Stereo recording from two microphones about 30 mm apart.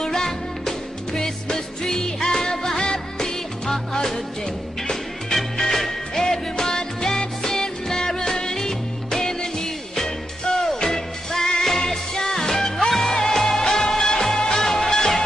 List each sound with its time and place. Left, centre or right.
0.1 s music: centre
5.7 s music: centre